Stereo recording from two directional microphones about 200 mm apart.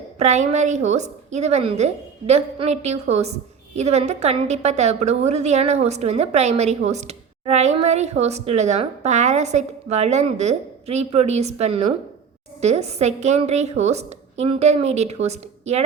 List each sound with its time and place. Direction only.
0.2 s a woman's voice: 35° right (ahead or behind)